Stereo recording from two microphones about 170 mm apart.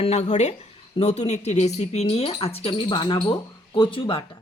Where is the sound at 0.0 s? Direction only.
40° left (ahead or behind).